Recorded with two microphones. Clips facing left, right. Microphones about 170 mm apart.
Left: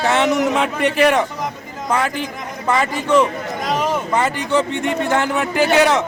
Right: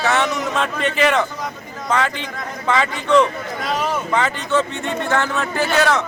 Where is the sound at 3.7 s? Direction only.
15° left (ahead or behind).